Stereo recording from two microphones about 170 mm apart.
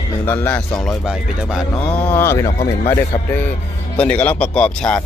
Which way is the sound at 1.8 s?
10° left (ahead or behind).